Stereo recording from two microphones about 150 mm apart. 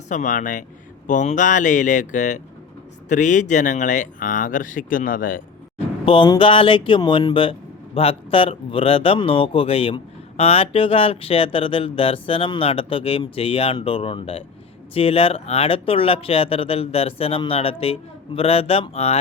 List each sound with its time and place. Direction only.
0.1 s speech: 55° left (ahead or behind)
5.7 s speech: 35° left (ahead or behind)